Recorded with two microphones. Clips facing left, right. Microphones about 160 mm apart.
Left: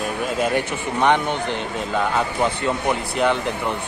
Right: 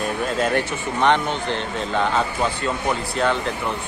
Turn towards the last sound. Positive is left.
turn(degrees=15)  # may be behind; listen again after turning